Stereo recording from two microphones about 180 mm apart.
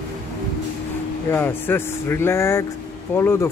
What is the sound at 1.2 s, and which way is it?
Speech, 10° left (ahead or behind).